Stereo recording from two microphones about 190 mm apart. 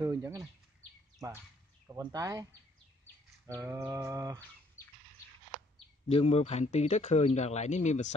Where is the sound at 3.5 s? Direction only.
15° right (ahead or behind).